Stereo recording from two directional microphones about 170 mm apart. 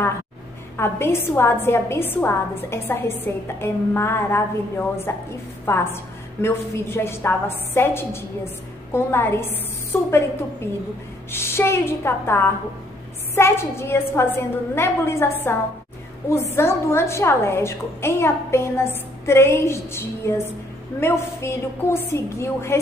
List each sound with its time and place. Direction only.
0.7 s a woman's voice: 15° left (ahead or behind)
11.3 s a woman's voice: 15° left (ahead or behind)